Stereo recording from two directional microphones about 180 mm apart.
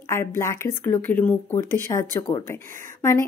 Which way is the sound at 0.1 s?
15° left (ahead or behind).